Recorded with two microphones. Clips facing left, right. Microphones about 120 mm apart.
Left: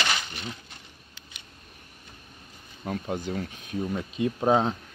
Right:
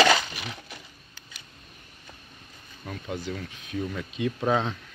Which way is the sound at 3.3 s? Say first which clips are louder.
Left 2 dB; 35° left (ahead or behind).